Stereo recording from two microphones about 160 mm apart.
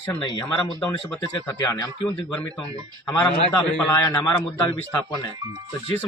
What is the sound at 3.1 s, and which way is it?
A man's voice, 25° left (ahead or behind).